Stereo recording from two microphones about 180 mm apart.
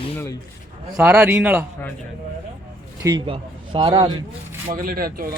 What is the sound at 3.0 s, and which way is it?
A man's voice, 25° right (ahead or behind).